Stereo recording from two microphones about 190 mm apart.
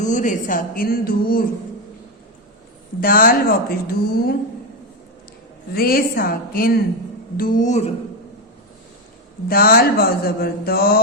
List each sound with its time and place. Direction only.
0.0 s mantra: 40° left (ahead or behind)
3.0 s mantra: 50° left (ahead or behind)
5.7 s mantra: 50° left (ahead or behind)
7.3 s speech: 45° left (ahead or behind)
9.5 s mantra: 50° left (ahead or behind)